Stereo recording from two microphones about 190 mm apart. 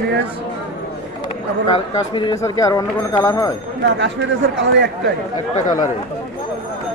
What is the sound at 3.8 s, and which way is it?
Speech, 70° right (ahead or behind).